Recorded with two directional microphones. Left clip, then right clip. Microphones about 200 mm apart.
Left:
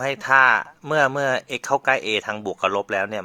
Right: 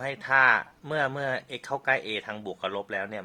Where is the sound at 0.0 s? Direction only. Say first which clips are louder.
Left 6 dB; 35° left (ahead or behind).